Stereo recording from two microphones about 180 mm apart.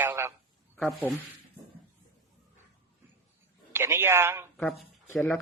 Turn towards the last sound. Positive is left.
turn(degrees=10)  # may be behind; listen again after turning